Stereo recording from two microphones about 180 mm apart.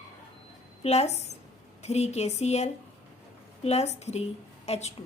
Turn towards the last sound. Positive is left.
turn(degrees=35)  # may be behind; listen again after turning